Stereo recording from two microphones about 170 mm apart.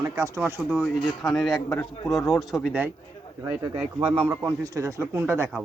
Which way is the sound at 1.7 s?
15° left (ahead or behind).